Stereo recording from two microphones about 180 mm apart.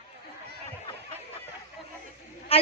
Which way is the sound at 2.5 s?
35° left (ahead or behind).